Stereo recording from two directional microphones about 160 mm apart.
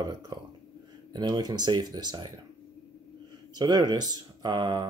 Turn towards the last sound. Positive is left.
turn(degrees=-25)  # may be behind; listen again after turning